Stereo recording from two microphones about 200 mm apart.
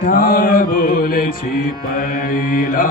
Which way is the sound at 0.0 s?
45° left (ahead or behind).